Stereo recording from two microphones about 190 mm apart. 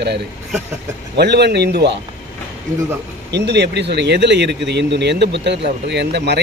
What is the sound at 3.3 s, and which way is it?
Speech, 60° right (ahead or behind).